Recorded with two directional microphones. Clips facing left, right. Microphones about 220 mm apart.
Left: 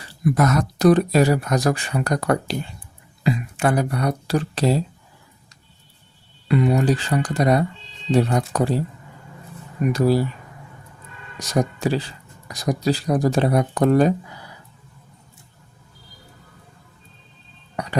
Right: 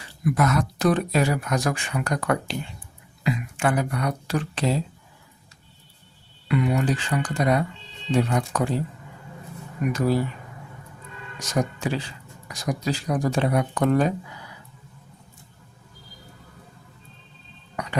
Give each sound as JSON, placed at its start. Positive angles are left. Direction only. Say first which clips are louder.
{"t": 0.3, "sound": "speech", "louder": "left 3 dB", "side_deg": 40}
{"t": 6.5, "sound": "speech", "louder": "left 4 dB", "side_deg": 35}
{"t": 9.9, "sound": "speech", "louder": "left 4 dB", "side_deg": 35}
{"t": 11.3, "sound": "speech", "louder": "left 4 dB", "side_deg": 35}